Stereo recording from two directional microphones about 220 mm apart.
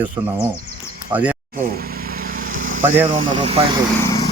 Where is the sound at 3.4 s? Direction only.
25° right (ahead or behind).